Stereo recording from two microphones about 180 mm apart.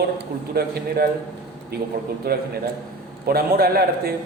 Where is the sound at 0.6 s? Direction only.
60° right (ahead or behind).